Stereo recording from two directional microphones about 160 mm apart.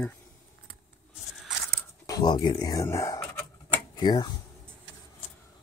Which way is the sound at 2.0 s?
25° left (ahead or behind).